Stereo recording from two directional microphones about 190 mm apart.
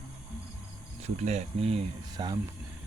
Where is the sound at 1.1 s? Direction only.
35° right (ahead or behind).